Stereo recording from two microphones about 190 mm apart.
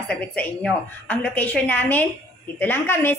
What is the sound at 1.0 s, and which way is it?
A woman's voice, 10° left (ahead or behind).